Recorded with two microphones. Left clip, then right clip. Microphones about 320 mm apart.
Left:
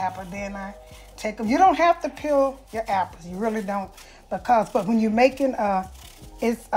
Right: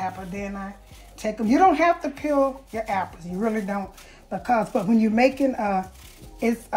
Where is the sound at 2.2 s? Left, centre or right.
Left.